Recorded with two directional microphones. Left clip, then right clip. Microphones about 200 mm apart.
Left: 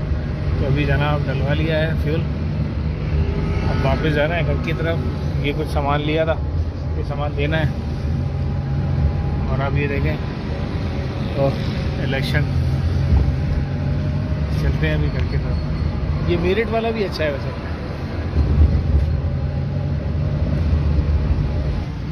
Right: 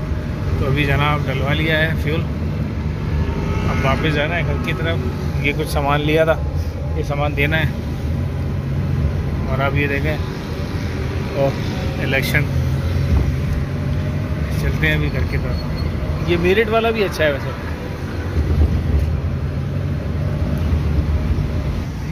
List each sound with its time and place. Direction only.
0.7 s speech: centre (ahead or behind)
3.8 s speech: 10° left (ahead or behind)
5.8 s speech: centre (ahead or behind)
7.3 s speech: 5° left (ahead or behind)
9.6 s speech: centre (ahead or behind)
12.1 s speech: centre (ahead or behind)
16.3 s speech: 10° right (ahead or behind)